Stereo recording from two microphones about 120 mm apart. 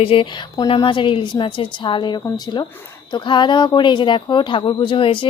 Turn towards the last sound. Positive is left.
turn(degrees=45)  # may be behind; listen again after turning